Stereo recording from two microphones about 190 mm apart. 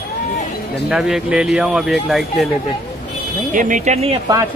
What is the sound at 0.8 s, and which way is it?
Speech, 5° right (ahead or behind).